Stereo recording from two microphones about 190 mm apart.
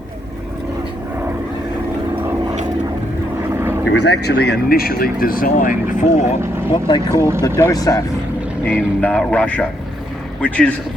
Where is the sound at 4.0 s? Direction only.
60° left (ahead or behind); by 6.0 s 45° left (ahead or behind).